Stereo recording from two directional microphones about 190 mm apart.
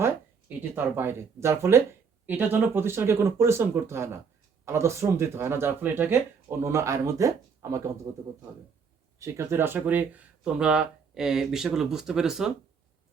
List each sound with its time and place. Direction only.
0.9 s speech: 15° right (ahead or behind)
9.1 s speech: 15° right (ahead or behind)